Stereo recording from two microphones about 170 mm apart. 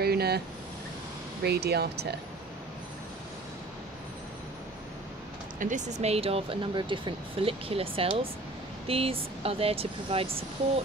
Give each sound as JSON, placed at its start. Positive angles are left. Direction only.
{"t": 0.0, "sound": "a sound", "side_deg": -70}
{"t": 1.4, "sound": "speech", "side_deg": -70}
{"t": 5.6, "sound": "speech", "side_deg": -45}